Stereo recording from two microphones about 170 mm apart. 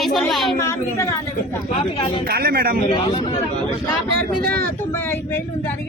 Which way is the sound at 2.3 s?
65° right (ahead or behind).